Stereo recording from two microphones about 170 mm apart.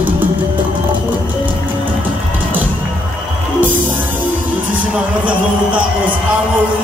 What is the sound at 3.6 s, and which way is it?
Music, 10° right (ahead or behind).